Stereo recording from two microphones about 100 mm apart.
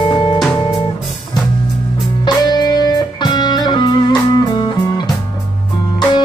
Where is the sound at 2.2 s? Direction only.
45° left (ahead or behind).